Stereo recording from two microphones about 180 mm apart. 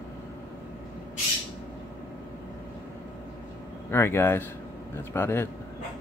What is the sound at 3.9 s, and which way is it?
Speech, 15° left (ahead or behind).